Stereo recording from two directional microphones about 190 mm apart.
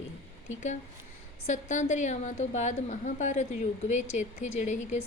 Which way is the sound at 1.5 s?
40° left (ahead or behind).